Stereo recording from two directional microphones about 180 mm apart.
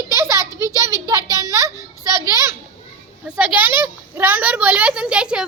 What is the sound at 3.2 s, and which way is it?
A woman's voice, 5° right (ahead or behind).